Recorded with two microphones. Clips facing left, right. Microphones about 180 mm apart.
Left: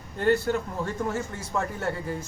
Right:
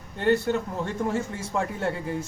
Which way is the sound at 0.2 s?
25° right (ahead or behind).